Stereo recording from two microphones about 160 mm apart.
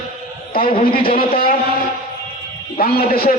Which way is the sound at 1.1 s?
65° left (ahead or behind).